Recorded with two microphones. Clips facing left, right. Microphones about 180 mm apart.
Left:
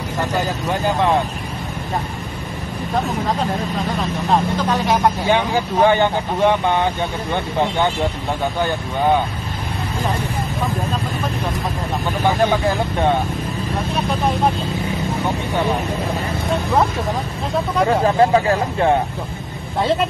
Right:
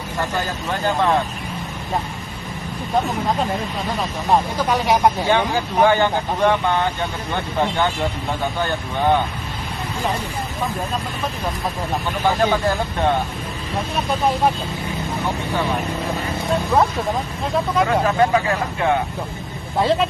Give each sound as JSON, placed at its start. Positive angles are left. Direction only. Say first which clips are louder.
{"t": 5.3, "sound": "speech", "louder": "left 1 dB", "side_deg": 15}
{"t": 17.8, "sound": "speech", "louder": "left 6 dB", "side_deg": 30}
{"t": 19.8, "sound": "speech", "louder": "even", "side_deg": 0}